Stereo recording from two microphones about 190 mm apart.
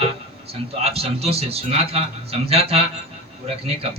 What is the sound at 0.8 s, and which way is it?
A man's voice, 30° right (ahead or behind).